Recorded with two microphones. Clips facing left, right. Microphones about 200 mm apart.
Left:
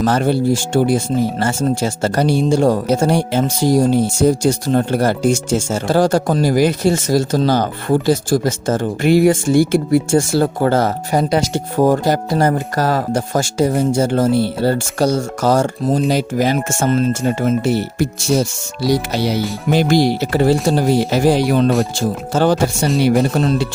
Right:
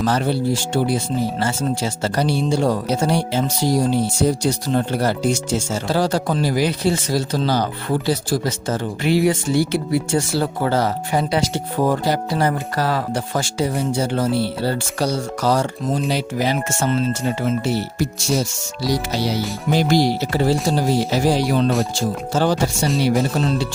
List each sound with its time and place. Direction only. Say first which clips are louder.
0.0 s speech: left 4 dB; 50° left (ahead or behind)